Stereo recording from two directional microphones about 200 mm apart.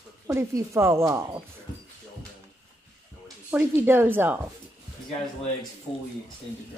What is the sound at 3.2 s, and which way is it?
A woman's voice, 10° right (ahead or behind).